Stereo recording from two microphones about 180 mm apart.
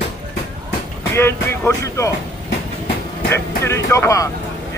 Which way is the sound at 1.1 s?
15° left (ahead or behind).